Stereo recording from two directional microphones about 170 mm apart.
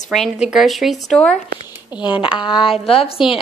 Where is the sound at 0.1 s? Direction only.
Centre (ahead or behind).